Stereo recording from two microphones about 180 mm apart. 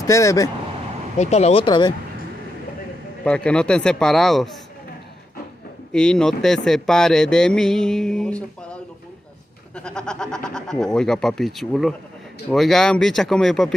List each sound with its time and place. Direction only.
0.0 s speech: 15° left (ahead or behind)
1.1 s speech: 40° left (ahead or behind)
3.3 s speech: 5° left (ahead or behind)
5.9 s speech: 5° left (ahead or behind)
9.8 s speech: 5° left (ahead or behind)